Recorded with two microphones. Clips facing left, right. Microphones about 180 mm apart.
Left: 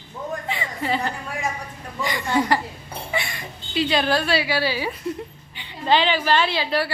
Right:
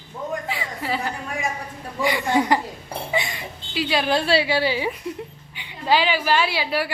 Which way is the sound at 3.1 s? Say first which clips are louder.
Right 2 dB; 15° right (ahead or behind).